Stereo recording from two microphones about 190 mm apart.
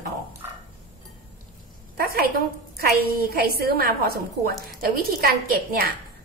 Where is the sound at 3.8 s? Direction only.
50° right (ahead or behind).